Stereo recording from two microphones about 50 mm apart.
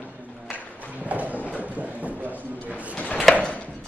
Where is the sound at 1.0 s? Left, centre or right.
Right.